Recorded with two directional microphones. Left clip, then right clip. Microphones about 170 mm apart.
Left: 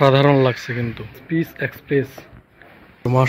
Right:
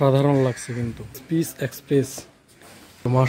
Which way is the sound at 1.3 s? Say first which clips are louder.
Left 3 dB; 45° right (ahead or behind).